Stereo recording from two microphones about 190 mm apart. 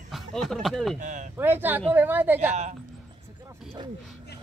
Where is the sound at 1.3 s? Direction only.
10° right (ahead or behind).